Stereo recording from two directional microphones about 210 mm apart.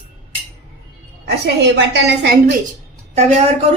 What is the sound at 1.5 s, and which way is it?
Speech, 55° right (ahead or behind).